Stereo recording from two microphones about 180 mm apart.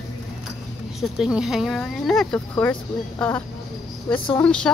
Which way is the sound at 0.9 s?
Centre (ahead or behind).